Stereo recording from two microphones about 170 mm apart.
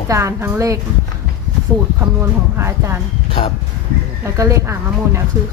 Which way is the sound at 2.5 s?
15° right (ahead or behind).